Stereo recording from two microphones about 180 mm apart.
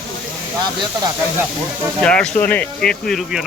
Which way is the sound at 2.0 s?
5° left (ahead or behind).